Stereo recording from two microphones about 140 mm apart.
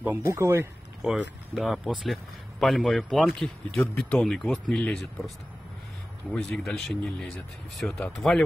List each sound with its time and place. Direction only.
0.0 s speech: 15° right (ahead or behind)
1.0 s speech: centre (ahead or behind)
6.3 s speech: 5° left (ahead or behind)